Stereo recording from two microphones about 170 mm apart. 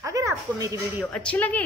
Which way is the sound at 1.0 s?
5° left (ahead or behind).